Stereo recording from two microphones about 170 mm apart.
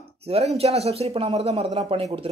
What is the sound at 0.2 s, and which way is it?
Speech, 35° right (ahead or behind).